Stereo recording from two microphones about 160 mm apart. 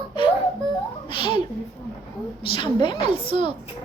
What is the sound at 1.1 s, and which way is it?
Speech, 30° left (ahead or behind).